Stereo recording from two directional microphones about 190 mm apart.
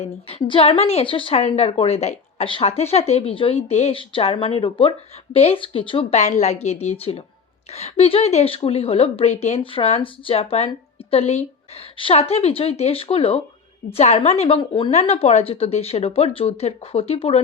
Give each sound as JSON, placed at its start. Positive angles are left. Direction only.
{"t": 0.0, "sound": "a woman's voice", "side_deg": 30}